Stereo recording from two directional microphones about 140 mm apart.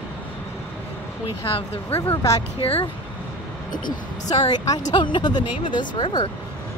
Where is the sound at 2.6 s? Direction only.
40° left (ahead or behind).